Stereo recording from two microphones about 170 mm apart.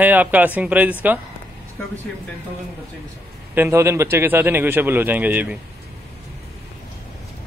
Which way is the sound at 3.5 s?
15° right (ahead or behind).